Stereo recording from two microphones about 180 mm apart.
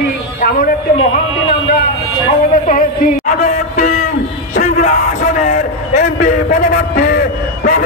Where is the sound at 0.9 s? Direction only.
30° left (ahead or behind).